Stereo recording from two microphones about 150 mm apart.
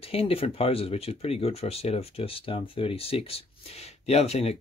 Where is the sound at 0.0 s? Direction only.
40° left (ahead or behind).